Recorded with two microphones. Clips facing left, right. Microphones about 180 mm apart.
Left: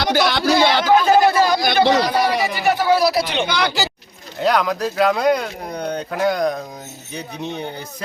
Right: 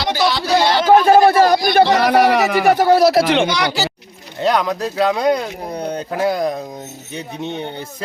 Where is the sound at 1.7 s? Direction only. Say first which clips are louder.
Right 3 dB; 65° right (ahead or behind).